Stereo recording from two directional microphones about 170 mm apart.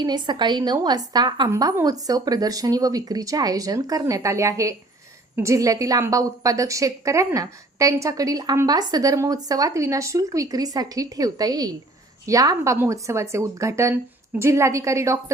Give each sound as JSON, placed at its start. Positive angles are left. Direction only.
{"t": 0.0, "sound": "a woman's voice", "side_deg": -25}